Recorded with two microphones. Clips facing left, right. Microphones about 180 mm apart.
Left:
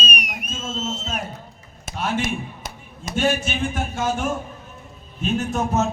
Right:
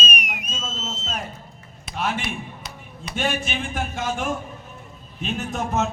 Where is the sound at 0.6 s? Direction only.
60° left (ahead or behind).